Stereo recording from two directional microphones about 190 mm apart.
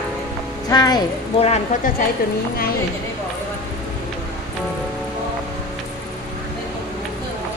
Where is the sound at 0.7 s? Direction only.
20° left (ahead or behind).